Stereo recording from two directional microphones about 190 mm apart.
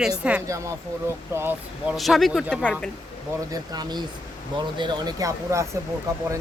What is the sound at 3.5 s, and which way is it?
Speech, 20° right (ahead or behind).